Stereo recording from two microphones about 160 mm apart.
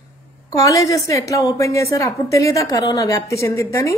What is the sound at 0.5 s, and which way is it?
Mantra, 20° left (ahead or behind).